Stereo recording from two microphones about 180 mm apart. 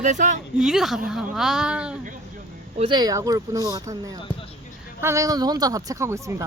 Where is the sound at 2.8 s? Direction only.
25° right (ahead or behind).